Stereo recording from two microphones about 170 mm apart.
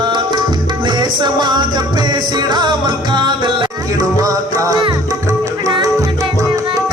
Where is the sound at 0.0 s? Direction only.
25° right (ahead or behind).